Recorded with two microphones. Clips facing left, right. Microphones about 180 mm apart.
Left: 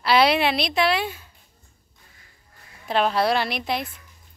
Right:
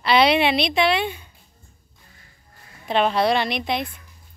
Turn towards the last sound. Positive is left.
turn(degrees=5)  # may be behind; listen again after turning